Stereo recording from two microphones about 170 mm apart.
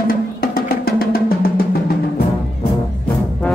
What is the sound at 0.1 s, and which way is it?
Music, 60° left (ahead or behind).